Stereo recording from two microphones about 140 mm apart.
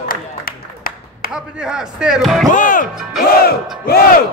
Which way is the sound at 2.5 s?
70° left (ahead or behind).